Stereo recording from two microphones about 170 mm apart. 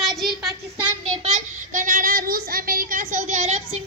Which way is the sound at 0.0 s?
Centre (ahead or behind).